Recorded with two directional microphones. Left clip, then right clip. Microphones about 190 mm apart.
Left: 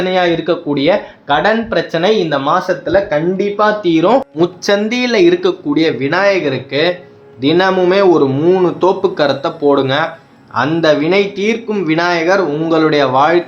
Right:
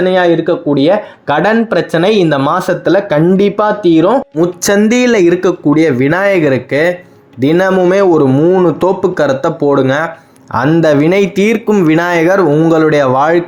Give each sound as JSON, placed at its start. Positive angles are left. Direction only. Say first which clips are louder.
{"t": 0.1, "sound": "speech", "louder": "right 3 dB", "side_deg": -20}
{"t": 1.3, "sound": "speech", "louder": "right 2 dB", "side_deg": -35}
{"t": 3.6, "sound": "speech", "louder": "even", "side_deg": -25}
{"t": 4.4, "sound": "speech", "louder": "right 2 dB", "side_deg": -40}
{"t": 8.3, "sound": "speech", "louder": "right 3 dB", "side_deg": -25}
{"t": 8.6, "sound": "speech", "louder": "right 2 dB", "side_deg": -45}